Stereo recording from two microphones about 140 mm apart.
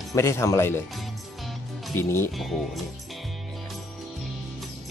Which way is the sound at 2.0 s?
15° left (ahead or behind).